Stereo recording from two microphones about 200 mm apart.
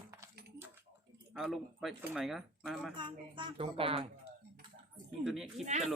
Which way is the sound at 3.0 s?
25° right (ahead or behind).